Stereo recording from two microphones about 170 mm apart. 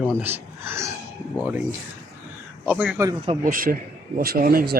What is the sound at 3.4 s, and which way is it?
Speech, 55° right (ahead or behind).